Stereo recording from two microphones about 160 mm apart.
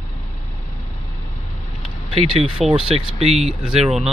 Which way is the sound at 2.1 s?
35° right (ahead or behind).